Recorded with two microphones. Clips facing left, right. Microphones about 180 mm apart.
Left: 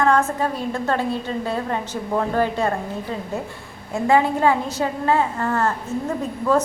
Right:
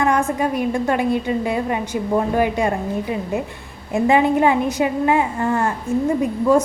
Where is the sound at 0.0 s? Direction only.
15° right (ahead or behind).